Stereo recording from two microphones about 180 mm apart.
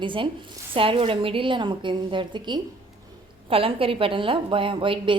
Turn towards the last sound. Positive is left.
turn(degrees=-30)  # may be behind; listen again after turning